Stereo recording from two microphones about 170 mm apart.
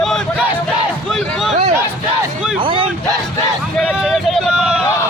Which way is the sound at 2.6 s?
30° right (ahead or behind).